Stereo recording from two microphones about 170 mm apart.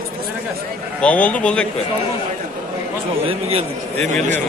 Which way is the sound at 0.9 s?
10° left (ahead or behind).